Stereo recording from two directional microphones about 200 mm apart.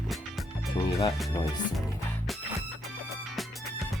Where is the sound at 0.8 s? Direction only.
15° left (ahead or behind).